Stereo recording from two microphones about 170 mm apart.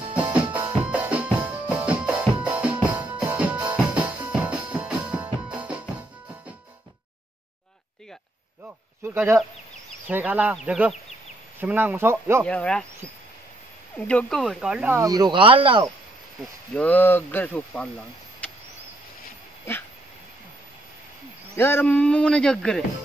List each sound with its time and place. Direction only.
0.1 s music: 10° right (ahead or behind)
9.0 s speech: 10° right (ahead or behind)
12.4 s speech: 5° left (ahead or behind)
13.9 s speech: 5° left (ahead or behind)
15.0 s speech: 20° right (ahead or behind)
16.7 s speech: 10° left (ahead or behind)
21.5 s speech: 15° left (ahead or behind)